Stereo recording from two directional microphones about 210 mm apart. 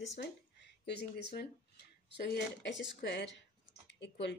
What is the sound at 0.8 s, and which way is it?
Speech, 50° left (ahead or behind).